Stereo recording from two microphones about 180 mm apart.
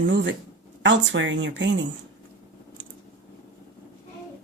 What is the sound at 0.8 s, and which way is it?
Speech, 90° right.